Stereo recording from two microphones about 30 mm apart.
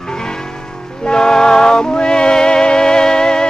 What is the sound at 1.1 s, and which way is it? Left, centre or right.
Music, left.